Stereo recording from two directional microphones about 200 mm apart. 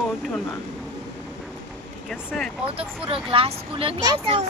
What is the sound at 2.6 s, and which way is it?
Speech, 25° right (ahead or behind).